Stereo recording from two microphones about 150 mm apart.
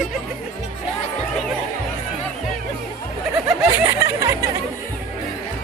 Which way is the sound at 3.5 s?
15° right (ahead or behind).